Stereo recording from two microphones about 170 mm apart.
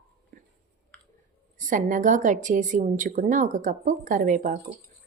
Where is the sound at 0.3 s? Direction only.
55° right (ahead or behind).